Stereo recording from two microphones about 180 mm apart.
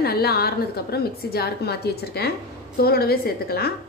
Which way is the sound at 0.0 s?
60° left (ahead or behind).